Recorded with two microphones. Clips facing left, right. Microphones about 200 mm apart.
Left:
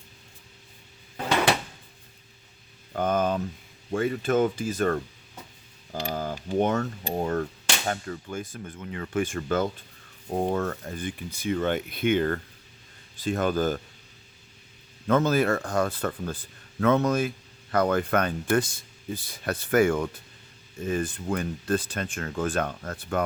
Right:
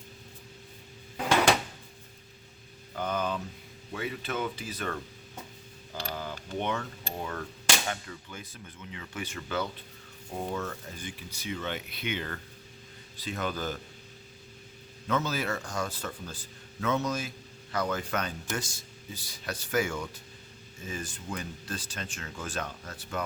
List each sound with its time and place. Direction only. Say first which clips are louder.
1.1 s a sound: even; centre (ahead or behind)
2.9 s speech: left 7 dB; 50° left (ahead or behind)
15.0 s speech: left 8 dB; 50° left (ahead or behind)